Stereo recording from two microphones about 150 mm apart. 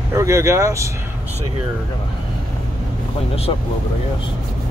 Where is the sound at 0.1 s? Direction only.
20° right (ahead or behind).